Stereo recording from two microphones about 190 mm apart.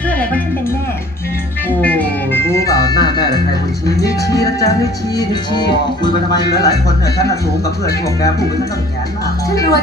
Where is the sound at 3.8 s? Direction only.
15° left (ahead or behind).